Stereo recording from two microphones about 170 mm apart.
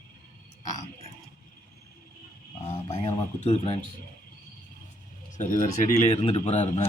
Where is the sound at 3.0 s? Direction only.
40° left (ahead or behind).